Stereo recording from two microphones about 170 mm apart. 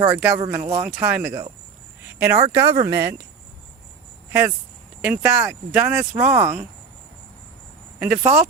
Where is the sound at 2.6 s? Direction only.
30° right (ahead or behind).